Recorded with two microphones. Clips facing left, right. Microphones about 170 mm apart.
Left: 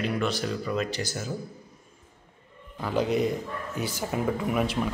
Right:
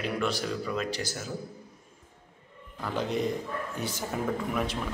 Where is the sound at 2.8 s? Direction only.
5° left (ahead or behind).